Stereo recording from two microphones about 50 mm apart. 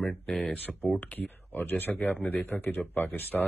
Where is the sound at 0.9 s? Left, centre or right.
Left.